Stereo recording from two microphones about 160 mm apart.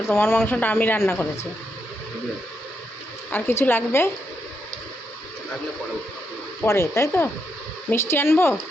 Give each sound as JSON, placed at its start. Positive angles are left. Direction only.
{"t": 0.1, "sound": "speech", "side_deg": 15}
{"t": 3.3, "sound": "speech", "side_deg": 15}
{"t": 6.7, "sound": "speech", "side_deg": 20}